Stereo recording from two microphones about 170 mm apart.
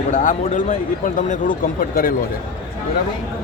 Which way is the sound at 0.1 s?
50° left (ahead or behind).